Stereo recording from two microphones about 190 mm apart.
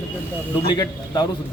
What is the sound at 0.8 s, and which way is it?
Speech, 20° left (ahead or behind).